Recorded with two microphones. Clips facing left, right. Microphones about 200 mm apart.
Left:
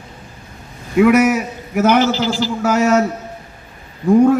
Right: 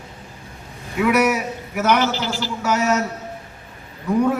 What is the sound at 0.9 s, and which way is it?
A man's voice, 50° left (ahead or behind).